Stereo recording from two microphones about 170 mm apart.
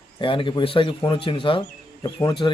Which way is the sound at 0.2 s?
30° left (ahead or behind).